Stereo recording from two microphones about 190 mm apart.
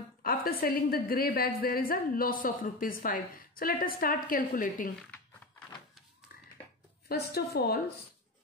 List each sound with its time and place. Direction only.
0.2 s a woman's voice: 50° left (ahead or behind)
7.1 s a woman's voice: 55° left (ahead or behind)